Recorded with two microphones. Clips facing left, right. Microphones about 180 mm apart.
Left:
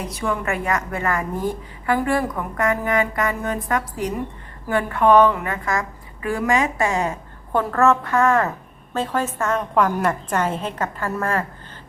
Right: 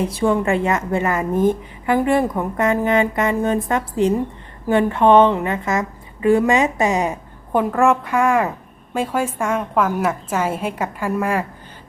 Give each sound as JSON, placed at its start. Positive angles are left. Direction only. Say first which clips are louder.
{"t": 0.0, "sound": "a woman's voice", "louder": "right 7 dB", "side_deg": -30}